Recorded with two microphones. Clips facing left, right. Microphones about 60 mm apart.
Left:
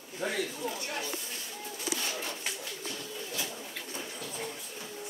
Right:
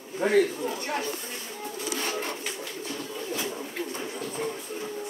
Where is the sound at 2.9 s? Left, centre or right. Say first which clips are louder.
Right 8 dB; right.